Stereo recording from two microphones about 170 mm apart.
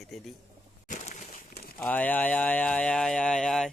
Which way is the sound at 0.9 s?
50° left (ahead or behind).